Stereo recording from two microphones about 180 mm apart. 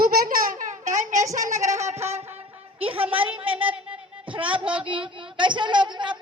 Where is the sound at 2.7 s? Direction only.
30° right (ahead or behind).